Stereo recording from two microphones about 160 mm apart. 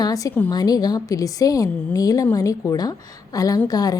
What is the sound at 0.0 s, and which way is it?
A woman's voice, 20° left (ahead or behind).